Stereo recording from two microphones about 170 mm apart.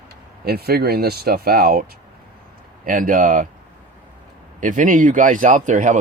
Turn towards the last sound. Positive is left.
turn(degrees=-50)  # may be behind; listen again after turning